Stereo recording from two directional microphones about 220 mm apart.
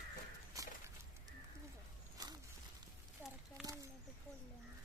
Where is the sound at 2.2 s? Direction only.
15° right (ahead or behind).